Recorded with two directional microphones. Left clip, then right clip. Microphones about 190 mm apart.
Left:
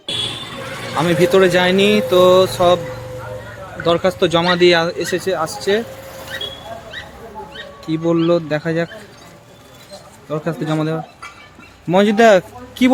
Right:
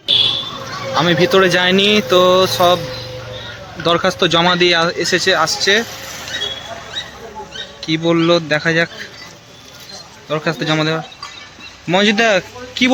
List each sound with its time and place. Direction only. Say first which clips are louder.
0.9 s speech: right 1 dB; 5° left (ahead or behind)
3.8 s speech: right 1 dB; 5° right (ahead or behind)
7.8 s speech: right 2 dB; 5° left (ahead or behind)
10.2 s speech: right 4 dB; 5° left (ahead or behind)